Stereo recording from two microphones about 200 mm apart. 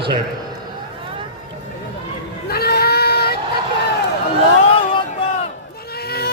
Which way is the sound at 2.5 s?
50° left (ahead or behind).